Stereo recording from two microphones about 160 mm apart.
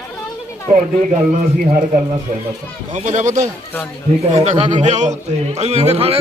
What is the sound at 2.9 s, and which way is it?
A man's voice, 50° right (ahead or behind).